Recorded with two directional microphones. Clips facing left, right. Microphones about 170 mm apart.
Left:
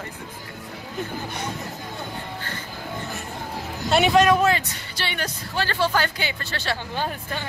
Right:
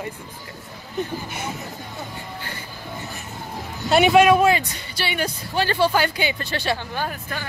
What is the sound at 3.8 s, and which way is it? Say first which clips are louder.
Speech: right 3 dB; 5° right (ahead or behind).